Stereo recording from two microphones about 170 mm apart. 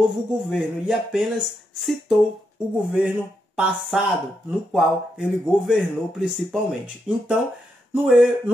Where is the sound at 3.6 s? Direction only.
5° right (ahead or behind).